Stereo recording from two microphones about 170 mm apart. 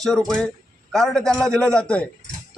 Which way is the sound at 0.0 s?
5° left (ahead or behind).